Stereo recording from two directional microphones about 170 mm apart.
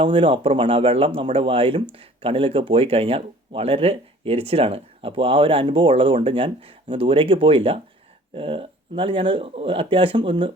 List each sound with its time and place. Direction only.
0.0 s speech: 30° right (ahead or behind)